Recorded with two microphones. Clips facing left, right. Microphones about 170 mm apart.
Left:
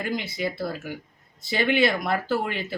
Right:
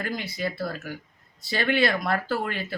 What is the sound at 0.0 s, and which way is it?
Speech, 20° left (ahead or behind).